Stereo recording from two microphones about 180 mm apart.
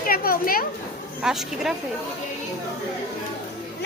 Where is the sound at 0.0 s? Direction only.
55° left (ahead or behind).